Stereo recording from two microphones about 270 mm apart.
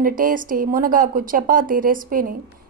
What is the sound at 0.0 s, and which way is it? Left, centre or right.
A woman's voice, right.